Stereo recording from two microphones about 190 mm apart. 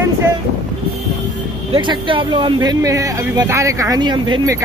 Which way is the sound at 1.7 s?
25° right (ahead or behind).